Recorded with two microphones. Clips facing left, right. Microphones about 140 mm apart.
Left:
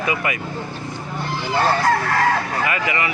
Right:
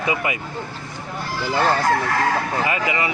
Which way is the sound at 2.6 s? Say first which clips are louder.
Even; 25° right (ahead or behind).